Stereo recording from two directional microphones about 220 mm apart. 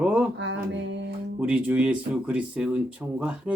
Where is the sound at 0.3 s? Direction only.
55° right (ahead or behind).